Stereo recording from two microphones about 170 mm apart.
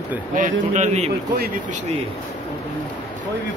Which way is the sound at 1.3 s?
55° right (ahead or behind).